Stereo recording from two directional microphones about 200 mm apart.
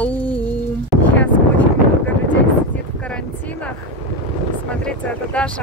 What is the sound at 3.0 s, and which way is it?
Vehicle, 5° left (ahead or behind).